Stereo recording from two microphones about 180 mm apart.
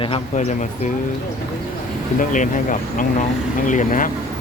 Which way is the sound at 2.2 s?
45° left (ahead or behind).